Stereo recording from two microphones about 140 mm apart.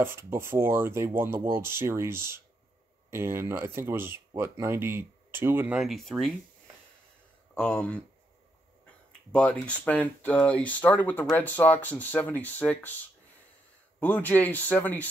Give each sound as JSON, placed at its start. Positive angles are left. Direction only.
{"t": 0.0, "sound": "speech", "side_deg": -15}
{"t": 5.8, "sound": "speech", "side_deg": 0}
{"t": 7.5, "sound": "speech", "side_deg": 10}
{"t": 9.3, "sound": "speech", "side_deg": 10}
{"t": 13.9, "sound": "speech", "side_deg": 10}